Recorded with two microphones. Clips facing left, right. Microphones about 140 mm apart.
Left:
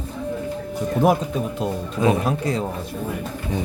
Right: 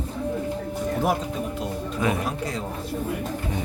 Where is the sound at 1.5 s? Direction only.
25° left (ahead or behind).